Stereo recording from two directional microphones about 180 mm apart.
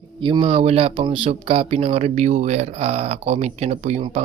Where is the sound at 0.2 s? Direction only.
25° right (ahead or behind).